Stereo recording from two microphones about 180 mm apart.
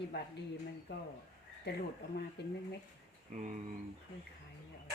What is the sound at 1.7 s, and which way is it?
Speech, 65° left (ahead or behind).